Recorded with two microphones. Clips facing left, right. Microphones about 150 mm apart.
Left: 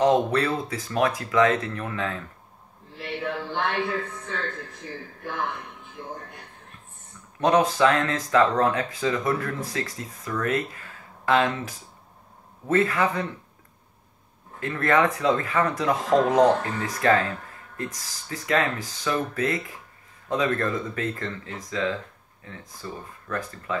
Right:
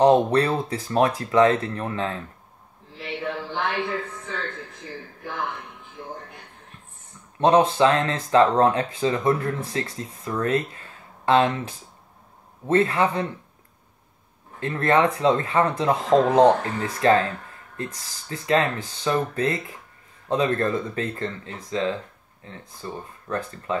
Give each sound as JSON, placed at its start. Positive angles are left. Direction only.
{"t": 0.0, "sound": "speech", "side_deg": -30}
{"t": 3.0, "sound": "a sound", "side_deg": 0}
{"t": 7.3, "sound": "speech", "side_deg": -30}
{"t": 14.6, "sound": "speech", "side_deg": -30}